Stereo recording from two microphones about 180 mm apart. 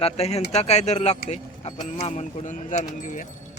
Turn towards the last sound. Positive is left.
turn(degrees=45)  # may be behind; listen again after turning